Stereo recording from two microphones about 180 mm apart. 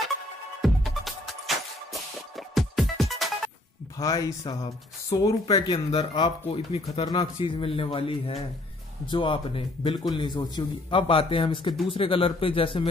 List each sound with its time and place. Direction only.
0.6 s music: centre (ahead or behind)
2.5 s music: centre (ahead or behind)
4.0 s a man's voice: 20° left (ahead or behind)